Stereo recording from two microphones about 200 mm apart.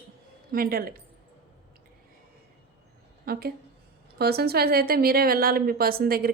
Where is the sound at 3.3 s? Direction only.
50° right (ahead or behind).